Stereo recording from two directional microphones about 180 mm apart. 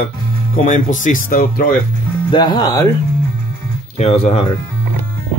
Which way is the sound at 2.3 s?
25° left (ahead or behind).